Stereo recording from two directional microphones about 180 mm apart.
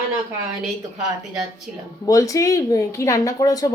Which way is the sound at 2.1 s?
20° left (ahead or behind).